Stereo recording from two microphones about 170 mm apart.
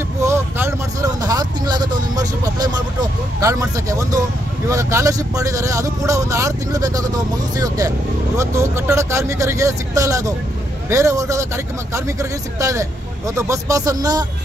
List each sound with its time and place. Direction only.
0.2 s vehicle: 15° right (ahead or behind)
3.3 s speech: 20° right (ahead or behind)